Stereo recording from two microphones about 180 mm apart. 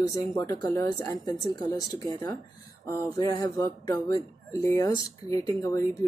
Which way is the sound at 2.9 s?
20° left (ahead or behind).